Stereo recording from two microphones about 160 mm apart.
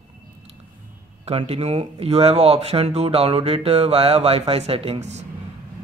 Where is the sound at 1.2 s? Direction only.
40° right (ahead or behind).